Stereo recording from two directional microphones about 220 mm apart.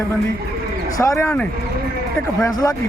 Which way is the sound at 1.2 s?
15° left (ahead or behind).